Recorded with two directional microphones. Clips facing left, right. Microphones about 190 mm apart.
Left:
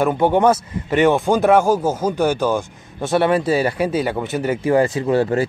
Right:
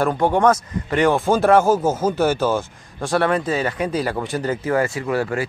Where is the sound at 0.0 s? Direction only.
20° left (ahead or behind).